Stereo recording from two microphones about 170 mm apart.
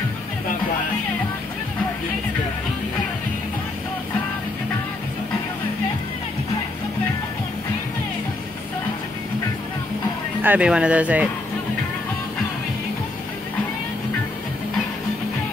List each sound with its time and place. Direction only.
10.4 s speech: 10° right (ahead or behind)